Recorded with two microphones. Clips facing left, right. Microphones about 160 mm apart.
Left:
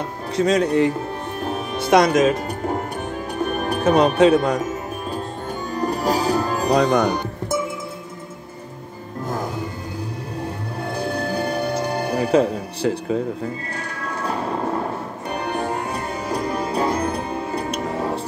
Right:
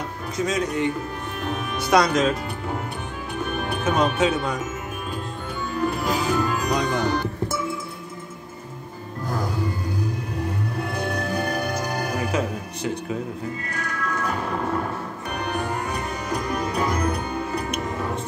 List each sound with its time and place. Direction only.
0.4 s speech: 30° left (ahead or behind)
1.4 s music: 30° left (ahead or behind)
3.3 s speech: 40° left (ahead or behind)
5.8 s speech: 40° left (ahead or behind)
7.1 s music: 15° left (ahead or behind)
10.9 s music: 30° left (ahead or behind)
15.3 s music: 30° left (ahead or behind)